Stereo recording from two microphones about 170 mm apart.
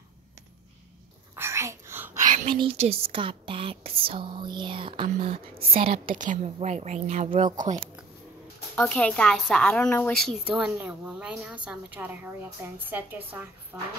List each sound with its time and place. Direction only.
1.3 s whispering: 15° right (ahead or behind)
2.1 s whispering: 50° right (ahead or behind)
2.6 s speech: 35° right (ahead or behind)
6.0 s a woman's voice: 50° right (ahead or behind)
8.7 s a woman's voice: 5° left (ahead or behind); by 13.4 s 10° right (ahead or behind)